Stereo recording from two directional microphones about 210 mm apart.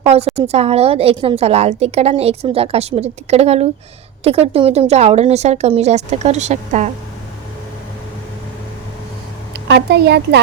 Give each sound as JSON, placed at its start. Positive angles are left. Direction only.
{"t": 0.3, "sound": "a woman's voice", "side_deg": -30}
{"t": 9.5, "sound": "a woman's voice", "side_deg": -50}